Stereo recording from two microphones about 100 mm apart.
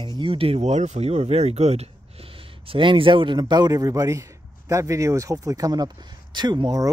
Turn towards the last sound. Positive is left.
turn(degrees=-50)  # may be behind; listen again after turning